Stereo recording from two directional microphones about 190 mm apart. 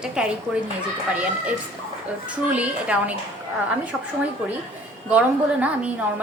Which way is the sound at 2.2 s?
5° right (ahead or behind).